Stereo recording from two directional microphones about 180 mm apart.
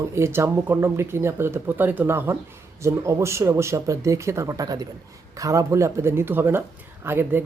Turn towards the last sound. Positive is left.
turn(degrees=-15)  # may be behind; listen again after turning